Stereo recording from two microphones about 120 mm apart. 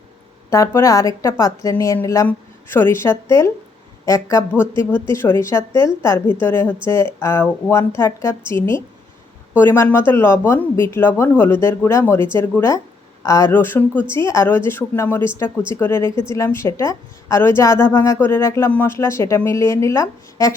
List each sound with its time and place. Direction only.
0.5 s a woman's voice: 25° left (ahead or behind)